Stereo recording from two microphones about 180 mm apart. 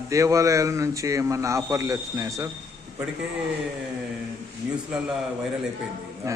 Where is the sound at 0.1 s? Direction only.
15° right (ahead or behind).